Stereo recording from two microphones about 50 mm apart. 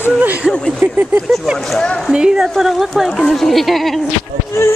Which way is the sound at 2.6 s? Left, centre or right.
Centre.